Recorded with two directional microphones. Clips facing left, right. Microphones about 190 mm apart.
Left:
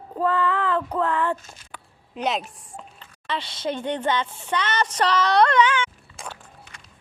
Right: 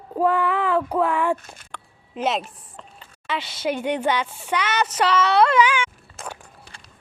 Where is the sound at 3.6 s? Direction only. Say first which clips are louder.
Right 3 dB; 10° right (ahead or behind).